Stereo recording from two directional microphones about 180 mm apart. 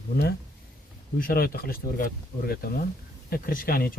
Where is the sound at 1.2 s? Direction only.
55° left (ahead or behind).